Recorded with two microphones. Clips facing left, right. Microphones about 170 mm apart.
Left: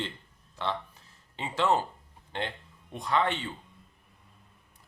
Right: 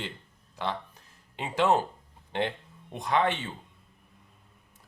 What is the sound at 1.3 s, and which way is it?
Speech, 15° right (ahead or behind).